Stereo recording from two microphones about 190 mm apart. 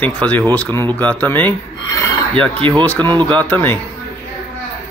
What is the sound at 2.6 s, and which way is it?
Speech, 25° right (ahead or behind).